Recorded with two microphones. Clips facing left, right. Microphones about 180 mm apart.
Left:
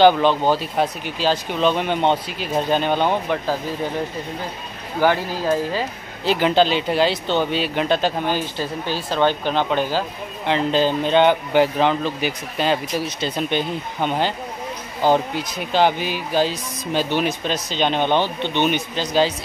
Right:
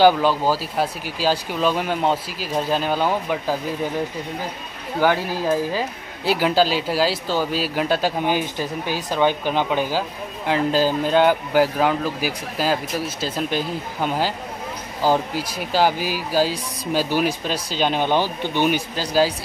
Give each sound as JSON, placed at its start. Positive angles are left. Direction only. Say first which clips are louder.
{"t": 0.0, "sound": "speech", "louder": "left 1 dB", "side_deg": -5}
{"t": 5.1, "sound": "speech", "louder": "even", "side_deg": -10}
{"t": 15.5, "sound": "speech", "louder": "left 1 dB", "side_deg": -5}
{"t": 18.2, "sound": "speech", "louder": "left 1 dB", "side_deg": 20}
{"t": 18.6, "sound": "speech", "louder": "even", "side_deg": -5}